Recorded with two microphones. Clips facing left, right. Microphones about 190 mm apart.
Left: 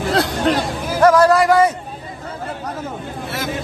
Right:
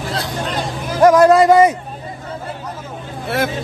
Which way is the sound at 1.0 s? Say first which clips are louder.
Right 3 dB; 20° right (ahead or behind).